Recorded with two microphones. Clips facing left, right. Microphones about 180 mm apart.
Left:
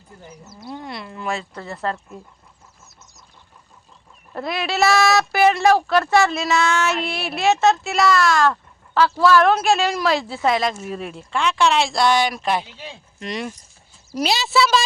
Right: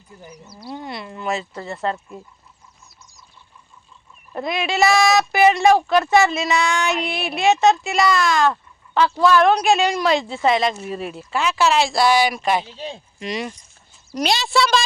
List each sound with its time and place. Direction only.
0.7 s speech: centre (ahead or behind)
4.4 s speech: centre (ahead or behind)
12.7 s speech: 35° right (ahead or behind)
13.1 s speech: centre (ahead or behind)